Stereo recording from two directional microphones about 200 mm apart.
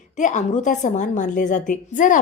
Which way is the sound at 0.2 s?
40° left (ahead or behind).